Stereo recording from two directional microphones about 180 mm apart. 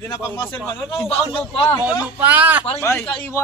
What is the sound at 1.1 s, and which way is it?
Speech, 30° left (ahead or behind).